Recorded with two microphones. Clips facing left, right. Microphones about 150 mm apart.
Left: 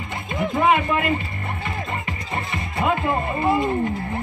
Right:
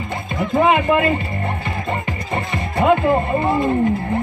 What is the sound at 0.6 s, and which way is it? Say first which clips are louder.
Music: right 5 dB; 30° right (ahead or behind).